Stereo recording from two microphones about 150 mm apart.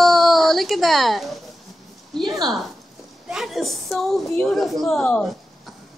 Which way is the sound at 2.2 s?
25° right (ahead or behind).